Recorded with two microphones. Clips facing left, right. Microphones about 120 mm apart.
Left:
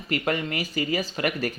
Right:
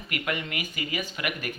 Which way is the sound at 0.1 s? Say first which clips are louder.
Left 5 dB; 35° left (ahead or behind).